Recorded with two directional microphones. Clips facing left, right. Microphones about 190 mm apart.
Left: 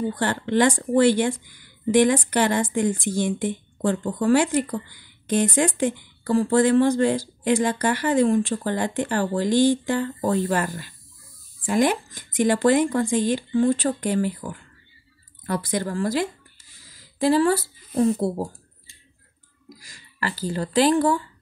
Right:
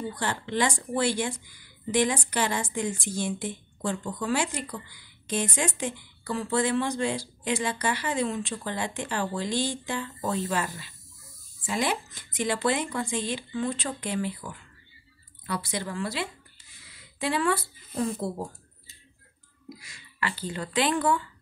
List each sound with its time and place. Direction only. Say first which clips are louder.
0.2 s speech: left 7 dB; 60° left (ahead or behind); by 18.5 s 35° left (ahead or behind)
19.8 s speech: left 4 dB; 40° left (ahead or behind)